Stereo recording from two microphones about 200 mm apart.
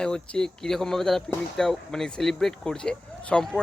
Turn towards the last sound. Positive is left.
turn(degrees=5)  # may be behind; listen again after turning